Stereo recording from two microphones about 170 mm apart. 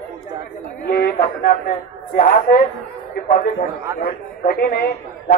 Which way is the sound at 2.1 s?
50° left (ahead or behind).